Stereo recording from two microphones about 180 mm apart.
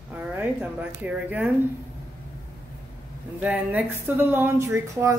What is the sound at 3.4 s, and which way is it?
Speech, 10° right (ahead or behind).